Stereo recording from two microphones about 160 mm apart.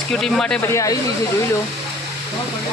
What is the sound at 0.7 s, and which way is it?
Speech, 20° left (ahead or behind).